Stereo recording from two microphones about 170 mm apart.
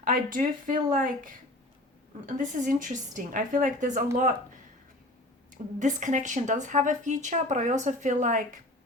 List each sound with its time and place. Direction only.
0.0 s speech: 55° right (ahead or behind)
5.8 s speech: 45° right (ahead or behind)